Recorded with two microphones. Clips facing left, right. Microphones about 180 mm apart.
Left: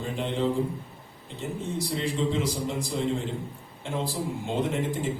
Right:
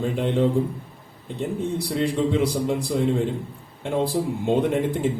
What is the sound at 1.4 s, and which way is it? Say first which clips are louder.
A man's voice: right 6 dB; 60° right (ahead or behind).